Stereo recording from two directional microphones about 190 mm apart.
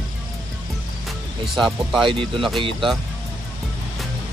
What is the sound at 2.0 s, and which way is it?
Speech, 25° right (ahead or behind).